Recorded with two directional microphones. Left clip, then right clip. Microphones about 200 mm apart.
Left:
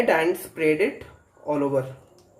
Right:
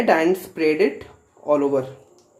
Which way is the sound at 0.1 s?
35° right (ahead or behind).